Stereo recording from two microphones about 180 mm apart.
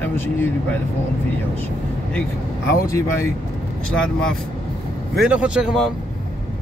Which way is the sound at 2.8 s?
15° left (ahead or behind).